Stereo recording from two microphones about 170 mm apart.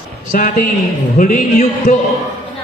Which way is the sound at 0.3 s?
50° left (ahead or behind).